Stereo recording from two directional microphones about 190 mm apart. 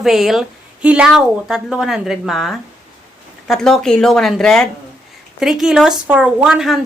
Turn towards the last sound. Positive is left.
turn(degrees=0)  # may be behind; listen again after turning